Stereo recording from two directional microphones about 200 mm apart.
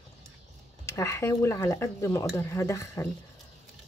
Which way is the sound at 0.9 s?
15° left (ahead or behind).